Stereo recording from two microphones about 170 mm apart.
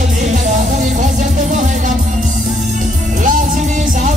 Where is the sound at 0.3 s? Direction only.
50° right (ahead or behind).